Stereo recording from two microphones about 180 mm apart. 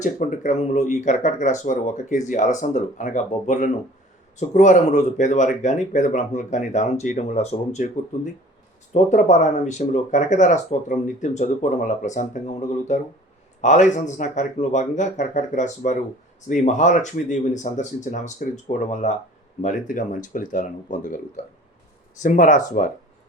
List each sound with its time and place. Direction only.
0.0 s speech: 45° left (ahead or behind)
22.2 s speech: 45° left (ahead or behind)